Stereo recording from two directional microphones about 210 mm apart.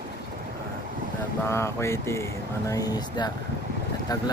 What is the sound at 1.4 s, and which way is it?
Speech, 15° left (ahead or behind).